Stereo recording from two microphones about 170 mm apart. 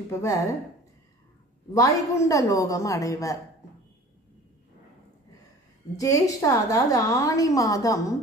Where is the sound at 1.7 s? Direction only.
20° left (ahead or behind).